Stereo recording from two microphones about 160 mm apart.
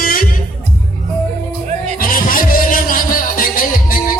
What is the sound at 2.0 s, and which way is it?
Music, 60° left (ahead or behind).